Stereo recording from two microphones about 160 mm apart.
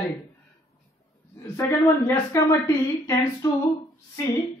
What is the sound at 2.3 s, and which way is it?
Speech, 20° left (ahead or behind).